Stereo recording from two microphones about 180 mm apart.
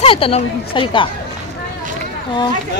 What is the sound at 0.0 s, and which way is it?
Speech, 30° left (ahead or behind).